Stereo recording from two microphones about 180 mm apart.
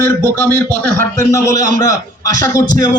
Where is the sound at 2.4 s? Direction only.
20° left (ahead or behind).